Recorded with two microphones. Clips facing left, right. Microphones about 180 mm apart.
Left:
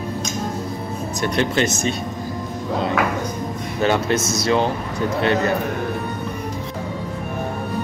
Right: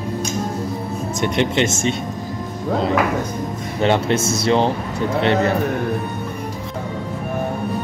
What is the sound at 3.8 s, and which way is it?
Speech, 25° right (ahead or behind).